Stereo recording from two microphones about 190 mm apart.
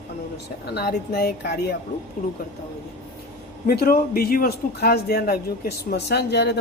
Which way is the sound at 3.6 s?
50° left (ahead or behind).